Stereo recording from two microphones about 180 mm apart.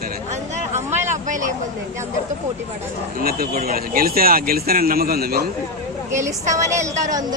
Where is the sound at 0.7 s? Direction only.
15° right (ahead or behind).